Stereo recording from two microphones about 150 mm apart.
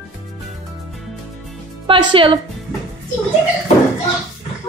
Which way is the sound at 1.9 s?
35° right (ahead or behind).